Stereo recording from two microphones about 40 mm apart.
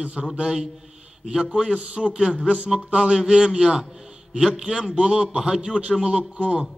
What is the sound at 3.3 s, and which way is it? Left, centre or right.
A man's voice, centre.